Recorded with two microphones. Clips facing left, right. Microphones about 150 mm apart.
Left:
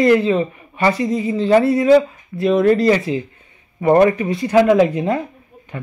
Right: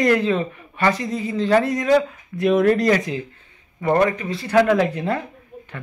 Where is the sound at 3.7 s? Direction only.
25° left (ahead or behind).